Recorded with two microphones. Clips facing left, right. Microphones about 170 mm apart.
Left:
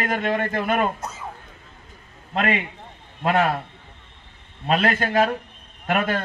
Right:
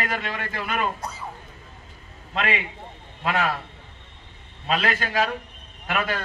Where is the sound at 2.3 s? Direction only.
55° left (ahead or behind).